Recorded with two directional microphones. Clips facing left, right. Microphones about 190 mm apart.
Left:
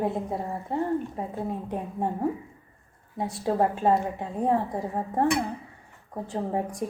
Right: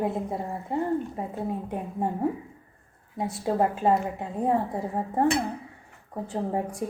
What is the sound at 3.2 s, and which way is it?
A woman's voice, 5° right (ahead or behind).